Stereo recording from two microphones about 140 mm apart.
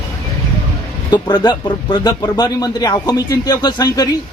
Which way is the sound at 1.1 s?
30° left (ahead or behind).